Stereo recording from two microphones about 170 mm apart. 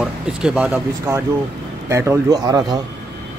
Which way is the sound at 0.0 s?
5° right (ahead or behind).